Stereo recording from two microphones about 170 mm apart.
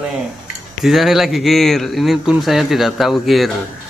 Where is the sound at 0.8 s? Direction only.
Centre (ahead or behind).